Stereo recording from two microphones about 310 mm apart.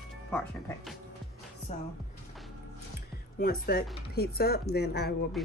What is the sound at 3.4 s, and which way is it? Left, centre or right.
Speech, left.